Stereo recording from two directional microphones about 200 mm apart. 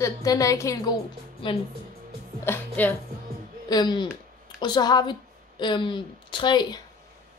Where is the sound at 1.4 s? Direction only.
25° left (ahead or behind).